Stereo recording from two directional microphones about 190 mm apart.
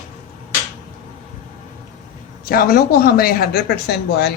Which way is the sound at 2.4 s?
50° left (ahead or behind).